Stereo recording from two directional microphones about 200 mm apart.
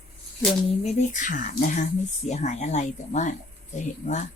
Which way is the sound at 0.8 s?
40° left (ahead or behind).